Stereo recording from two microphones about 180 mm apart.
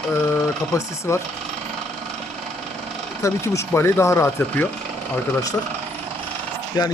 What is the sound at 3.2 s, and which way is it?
Speech, 15° left (ahead or behind).